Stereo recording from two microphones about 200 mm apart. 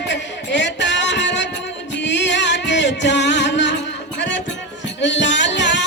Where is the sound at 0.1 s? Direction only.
60° left (ahead or behind).